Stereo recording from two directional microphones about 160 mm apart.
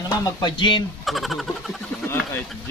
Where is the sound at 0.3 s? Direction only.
25° left (ahead or behind).